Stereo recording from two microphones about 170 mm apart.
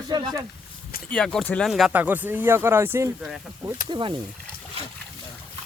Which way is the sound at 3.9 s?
30° right (ahead or behind).